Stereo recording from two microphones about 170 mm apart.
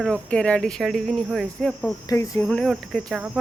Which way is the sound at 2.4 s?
5° left (ahead or behind).